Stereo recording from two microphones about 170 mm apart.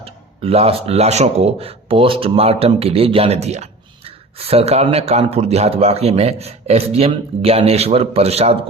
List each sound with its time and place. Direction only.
0.0 s speech: 35° right (ahead or behind)